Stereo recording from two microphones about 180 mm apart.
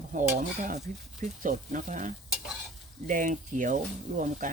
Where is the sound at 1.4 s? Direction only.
45° right (ahead or behind).